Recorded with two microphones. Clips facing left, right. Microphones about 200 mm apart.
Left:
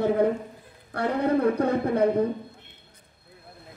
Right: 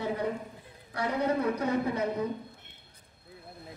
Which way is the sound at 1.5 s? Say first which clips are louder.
Left 6 dB; 55° left (ahead or behind).